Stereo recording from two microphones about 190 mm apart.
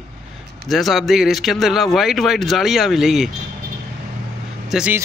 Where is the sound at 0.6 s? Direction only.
Centre (ahead or behind).